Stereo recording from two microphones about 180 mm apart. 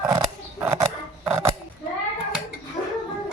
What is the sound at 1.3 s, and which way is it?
Scissors, 15° right (ahead or behind).